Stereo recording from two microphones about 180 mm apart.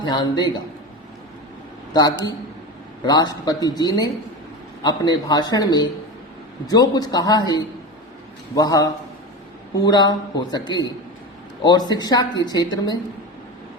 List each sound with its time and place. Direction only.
0.0 s a man's voice: 25° left (ahead or behind)
1.9 s a woman's voice: 20° left (ahead or behind)